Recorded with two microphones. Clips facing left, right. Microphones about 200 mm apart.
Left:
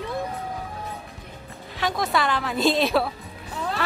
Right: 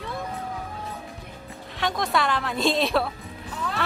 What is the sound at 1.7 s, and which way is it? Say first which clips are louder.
A woman's voice: left 1 dB; centre (ahead or behind).